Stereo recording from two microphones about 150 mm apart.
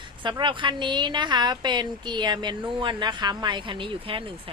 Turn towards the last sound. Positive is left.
turn(degrees=-35)  # may be behind; listen again after turning